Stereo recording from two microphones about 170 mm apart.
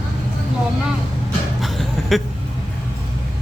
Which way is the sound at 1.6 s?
Centre (ahead or behind).